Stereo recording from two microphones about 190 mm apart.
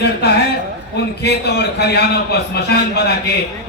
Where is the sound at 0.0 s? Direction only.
60° left (ahead or behind).